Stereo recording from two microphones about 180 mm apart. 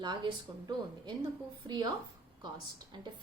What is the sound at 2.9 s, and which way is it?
Speech, 25° right (ahead or behind).